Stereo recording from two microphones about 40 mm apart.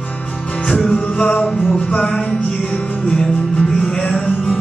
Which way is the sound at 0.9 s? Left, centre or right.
Left.